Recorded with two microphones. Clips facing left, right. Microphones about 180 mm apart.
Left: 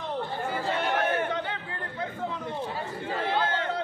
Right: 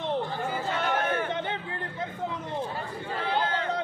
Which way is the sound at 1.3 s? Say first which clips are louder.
Right 1 dB; 20° right (ahead or behind).